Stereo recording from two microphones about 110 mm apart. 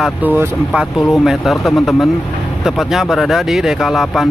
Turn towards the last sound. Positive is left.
turn(degrees=0)  # may be behind; listen again after turning